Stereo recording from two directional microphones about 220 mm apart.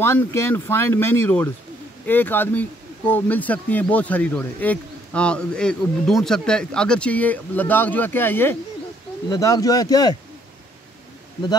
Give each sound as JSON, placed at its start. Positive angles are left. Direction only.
{"t": 0.0, "sound": "speech", "side_deg": 10}